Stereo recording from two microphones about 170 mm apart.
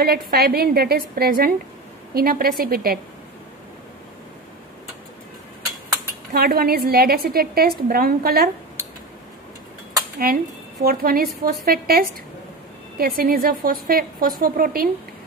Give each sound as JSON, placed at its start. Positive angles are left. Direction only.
{"t": 0.0, "sound": "a woman's voice", "side_deg": -65}
{"t": 6.3, "sound": "a woman's voice", "side_deg": -60}
{"t": 10.1, "sound": "a woman's voice", "side_deg": -55}